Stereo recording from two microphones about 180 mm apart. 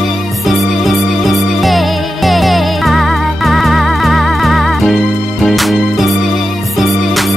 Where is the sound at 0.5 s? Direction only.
Centre (ahead or behind).